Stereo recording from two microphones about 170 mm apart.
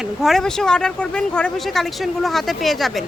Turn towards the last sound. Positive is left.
turn(degrees=0)  # may be behind; listen again after turning